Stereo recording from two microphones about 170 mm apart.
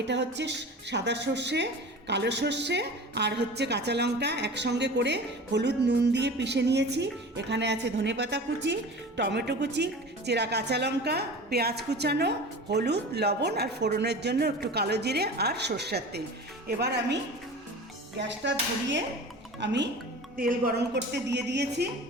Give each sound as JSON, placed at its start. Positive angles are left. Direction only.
{"t": 0.1, "sound": "a woman's voice", "side_deg": -90}
{"t": 18.2, "sound": "a sound", "side_deg": -90}
{"t": 20.3, "sound": "speech", "side_deg": -60}